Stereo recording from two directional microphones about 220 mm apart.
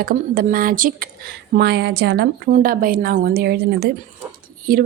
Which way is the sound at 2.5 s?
40° right (ahead or behind).